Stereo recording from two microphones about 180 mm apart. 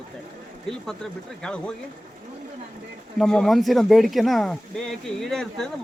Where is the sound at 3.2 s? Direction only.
Centre (ahead or behind).